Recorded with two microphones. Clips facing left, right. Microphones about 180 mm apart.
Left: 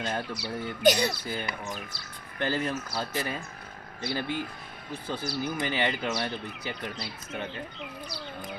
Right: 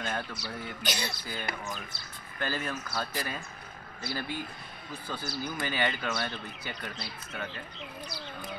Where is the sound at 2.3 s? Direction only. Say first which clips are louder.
Left 5 dB; 25° left (ahead or behind).